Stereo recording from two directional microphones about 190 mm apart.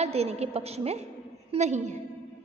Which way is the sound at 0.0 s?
35° right (ahead or behind).